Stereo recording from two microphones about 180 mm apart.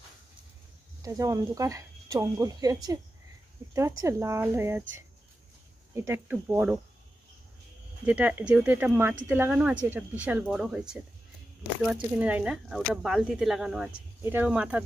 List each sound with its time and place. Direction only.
1.0 s speech: 20° right (ahead or behind)
8.0 s speech: 10° right (ahead or behind)